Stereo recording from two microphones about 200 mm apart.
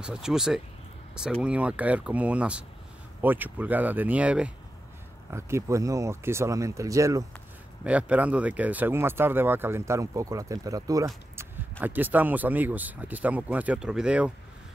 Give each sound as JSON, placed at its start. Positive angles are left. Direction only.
{"t": 0.0, "sound": "speech", "side_deg": -5}